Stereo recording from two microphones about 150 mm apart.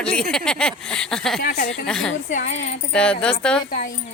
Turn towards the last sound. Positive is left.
turn(degrees=5)  # may be behind; listen again after turning